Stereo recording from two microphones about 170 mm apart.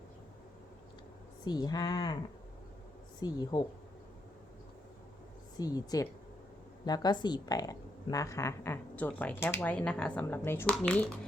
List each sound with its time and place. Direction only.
1.5 s speech: 25° left (ahead or behind)
3.2 s speech: 25° left (ahead or behind)
5.5 s speech: 20° left (ahead or behind); by 11.2 s 5° left (ahead or behind)